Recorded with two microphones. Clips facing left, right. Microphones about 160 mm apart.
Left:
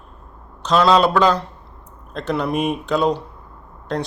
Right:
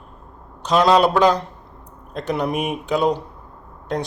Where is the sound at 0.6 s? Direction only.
15° right (ahead or behind).